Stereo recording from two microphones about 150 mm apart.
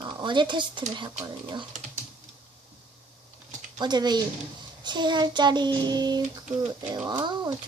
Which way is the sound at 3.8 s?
30° right (ahead or behind).